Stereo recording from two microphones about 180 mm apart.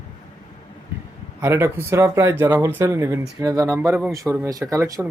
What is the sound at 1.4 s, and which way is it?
Speech, 15° right (ahead or behind).